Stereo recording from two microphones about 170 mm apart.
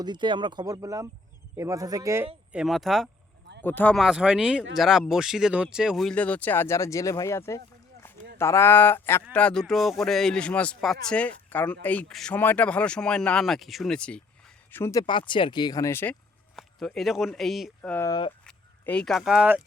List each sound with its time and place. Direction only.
0.0 s speech: 25° right (ahead or behind)
2.5 s speech: 5° right (ahead or behind)
3.6 s speech: 10° left (ahead or behind)
3.9 s speech: 5° right (ahead or behind)
14.7 s speech: 15° left (ahead or behind)
16.6 s speech: centre (ahead or behind)
17.9 s speech: 15° left (ahead or behind)
18.4 s speech: 5° left (ahead or behind)